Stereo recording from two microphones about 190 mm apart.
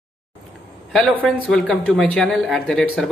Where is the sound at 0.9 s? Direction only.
5° left (ahead or behind).